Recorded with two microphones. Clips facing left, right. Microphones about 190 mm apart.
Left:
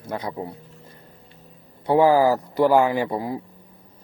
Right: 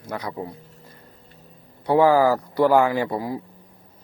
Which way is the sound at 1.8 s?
15° left (ahead or behind).